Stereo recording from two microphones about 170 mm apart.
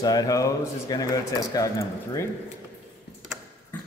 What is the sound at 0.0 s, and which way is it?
Speech, 20° left (ahead or behind).